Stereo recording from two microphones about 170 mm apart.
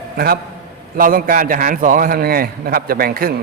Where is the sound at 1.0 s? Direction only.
55° right (ahead or behind).